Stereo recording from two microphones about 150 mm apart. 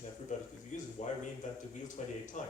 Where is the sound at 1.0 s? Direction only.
50° left (ahead or behind).